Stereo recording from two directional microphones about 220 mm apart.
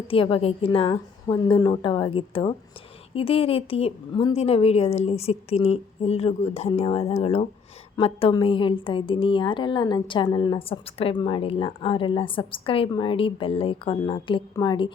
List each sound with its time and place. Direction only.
0.1 s a woman's voice: 25° left (ahead or behind)